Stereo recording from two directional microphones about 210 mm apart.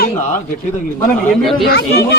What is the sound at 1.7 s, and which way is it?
Speech, 50° left (ahead or behind).